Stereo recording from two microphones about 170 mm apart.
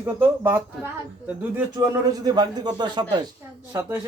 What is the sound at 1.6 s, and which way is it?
A man's voice, 20° right (ahead or behind).